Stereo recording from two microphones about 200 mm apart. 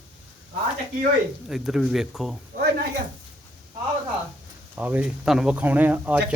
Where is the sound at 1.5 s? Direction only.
Centre (ahead or behind).